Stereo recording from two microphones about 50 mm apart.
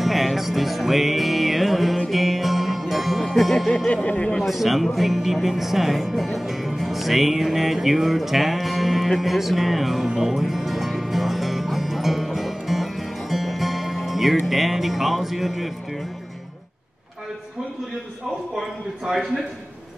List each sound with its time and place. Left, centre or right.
0.0 s music: centre
3.9 s speech: left
4.5 s music: centre
14.4 s speech: centre
18.6 s speech: centre